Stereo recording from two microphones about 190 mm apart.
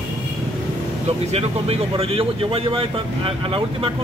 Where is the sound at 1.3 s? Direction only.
35° right (ahead or behind).